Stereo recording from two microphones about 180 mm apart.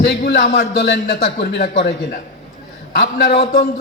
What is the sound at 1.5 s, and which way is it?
Speech, 70° left (ahead or behind).